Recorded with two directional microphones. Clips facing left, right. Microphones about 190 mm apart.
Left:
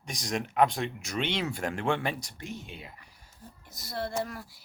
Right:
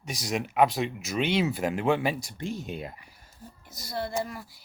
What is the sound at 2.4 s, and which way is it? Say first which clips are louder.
Speech: right 7 dB; 35° right (ahead or behind).